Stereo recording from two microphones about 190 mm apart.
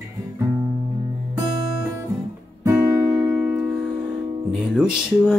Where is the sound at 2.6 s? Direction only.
15° right (ahead or behind).